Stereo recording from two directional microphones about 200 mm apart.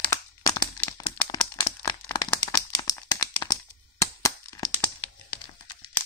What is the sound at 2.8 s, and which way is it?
Crack, 15° left (ahead or behind).